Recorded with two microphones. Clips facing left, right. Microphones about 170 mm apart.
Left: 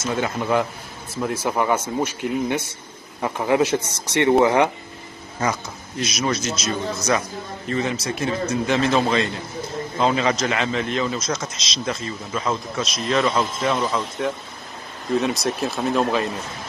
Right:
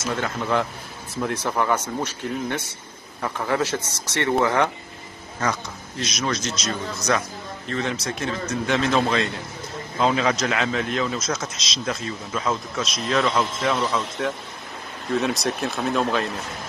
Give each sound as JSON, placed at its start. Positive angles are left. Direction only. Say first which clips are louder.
{"t": 0.1, "sound": "a man's voice", "louder": "left 3 dB", "side_deg": 10}
{"t": 15.1, "sound": "a man's voice", "louder": "left 2 dB", "side_deg": 0}